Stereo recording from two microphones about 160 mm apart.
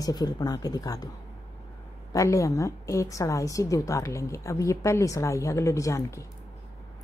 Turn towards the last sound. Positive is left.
turn(degrees=20)  # may be behind; listen again after turning